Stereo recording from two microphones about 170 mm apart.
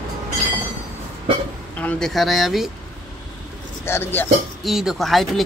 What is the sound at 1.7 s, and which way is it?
Speech, 5° left (ahead or behind).